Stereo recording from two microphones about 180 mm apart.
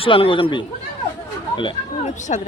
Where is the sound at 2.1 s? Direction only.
40° left (ahead or behind).